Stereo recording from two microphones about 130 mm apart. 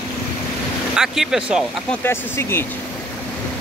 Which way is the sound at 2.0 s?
20° left (ahead or behind).